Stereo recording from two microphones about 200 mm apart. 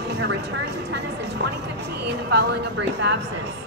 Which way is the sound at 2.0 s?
55° right (ahead or behind).